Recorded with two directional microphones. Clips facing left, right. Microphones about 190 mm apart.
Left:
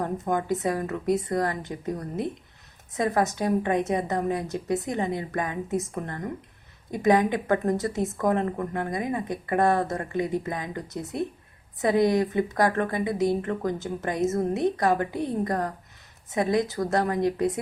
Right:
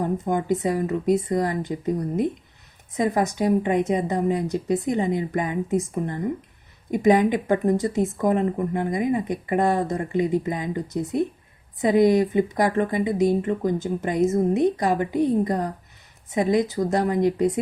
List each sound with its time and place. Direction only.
0.0 s speech: 15° right (ahead or behind)
3.0 s speech: 15° right (ahead or behind)